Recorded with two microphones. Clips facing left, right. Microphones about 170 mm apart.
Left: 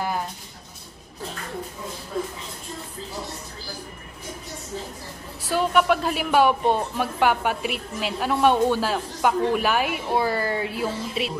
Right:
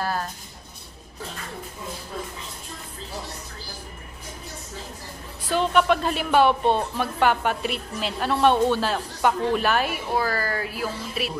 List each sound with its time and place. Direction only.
0.0 s a sound: 15° left (ahead or behind)
5.4 s speech: 10° left (ahead or behind)
10.1 s speech: 25° left (ahead or behind)